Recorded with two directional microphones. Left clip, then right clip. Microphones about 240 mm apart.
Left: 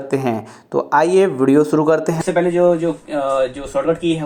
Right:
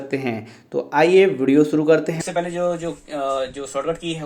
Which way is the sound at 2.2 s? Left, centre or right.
Right.